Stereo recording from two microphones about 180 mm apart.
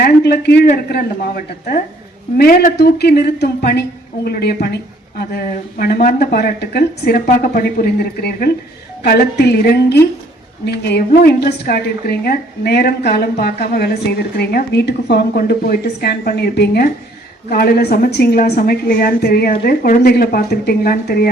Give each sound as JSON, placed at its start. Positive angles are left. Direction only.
{"t": 0.0, "sound": "speech", "side_deg": 60}
{"t": 2.4, "sound": "a woman's voice", "side_deg": 55}